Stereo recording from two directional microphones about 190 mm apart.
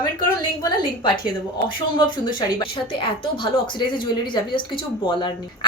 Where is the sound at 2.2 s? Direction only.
25° left (ahead or behind).